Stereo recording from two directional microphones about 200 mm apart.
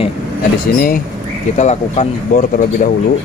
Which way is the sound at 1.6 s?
35° left (ahead or behind).